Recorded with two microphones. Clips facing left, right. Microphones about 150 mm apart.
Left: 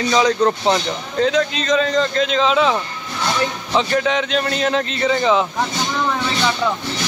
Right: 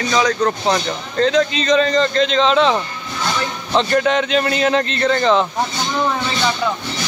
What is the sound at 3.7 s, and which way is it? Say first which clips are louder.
A man's voice: right 3 dB; centre (ahead or behind).